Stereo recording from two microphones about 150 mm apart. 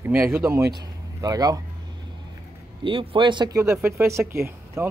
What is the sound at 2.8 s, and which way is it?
Speech, 35° right (ahead or behind).